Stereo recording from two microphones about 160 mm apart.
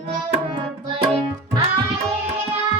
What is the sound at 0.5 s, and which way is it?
Tabla, 35° right (ahead or behind).